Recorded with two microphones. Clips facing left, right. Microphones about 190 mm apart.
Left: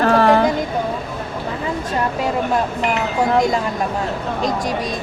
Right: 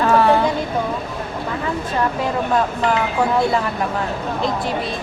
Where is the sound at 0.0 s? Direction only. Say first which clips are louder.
Left 1 dB; 45° left (ahead or behind).